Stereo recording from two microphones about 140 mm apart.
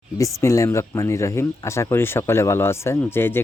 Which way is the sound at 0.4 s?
20° left (ahead or behind).